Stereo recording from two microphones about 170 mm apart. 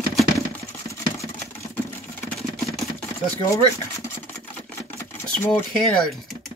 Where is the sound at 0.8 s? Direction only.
15° left (ahead or behind).